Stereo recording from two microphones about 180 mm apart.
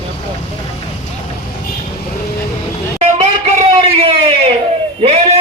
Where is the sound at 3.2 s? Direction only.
35° right (ahead or behind).